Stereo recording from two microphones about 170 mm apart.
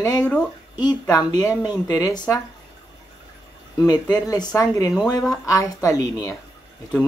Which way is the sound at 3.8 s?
25° left (ahead or behind).